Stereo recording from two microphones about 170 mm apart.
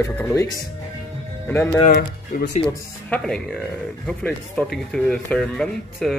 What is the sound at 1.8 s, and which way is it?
Speech, 50° left (ahead or behind).